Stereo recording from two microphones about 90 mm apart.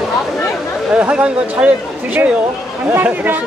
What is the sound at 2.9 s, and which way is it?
Speech, 20° right (ahead or behind).